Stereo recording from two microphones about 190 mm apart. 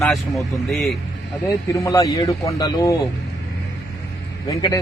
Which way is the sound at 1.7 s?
15° left (ahead or behind).